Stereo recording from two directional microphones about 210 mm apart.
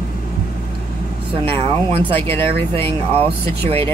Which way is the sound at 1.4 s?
25° right (ahead or behind).